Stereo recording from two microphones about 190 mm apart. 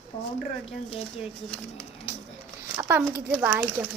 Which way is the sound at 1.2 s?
5° left (ahead or behind).